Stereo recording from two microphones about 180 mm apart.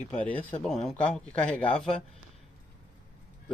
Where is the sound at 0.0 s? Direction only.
10° left (ahead or behind).